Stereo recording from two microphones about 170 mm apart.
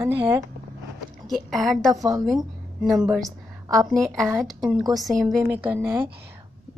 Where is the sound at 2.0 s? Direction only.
20° right (ahead or behind).